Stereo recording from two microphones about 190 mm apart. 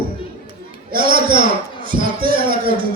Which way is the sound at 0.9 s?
50° right (ahead or behind).